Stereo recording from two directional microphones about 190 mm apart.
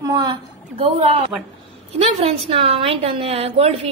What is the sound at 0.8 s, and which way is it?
A woman's voice, 30° right (ahead or behind).